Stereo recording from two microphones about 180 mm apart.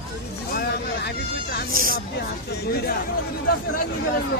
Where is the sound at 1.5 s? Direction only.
50° left (ahead or behind).